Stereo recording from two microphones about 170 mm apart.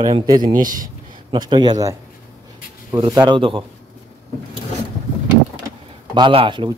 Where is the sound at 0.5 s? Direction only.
50° right (ahead or behind).